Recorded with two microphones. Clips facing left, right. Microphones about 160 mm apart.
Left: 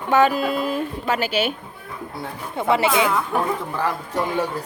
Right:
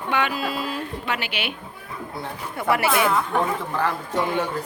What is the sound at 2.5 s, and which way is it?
Speech, 20° left (ahead or behind).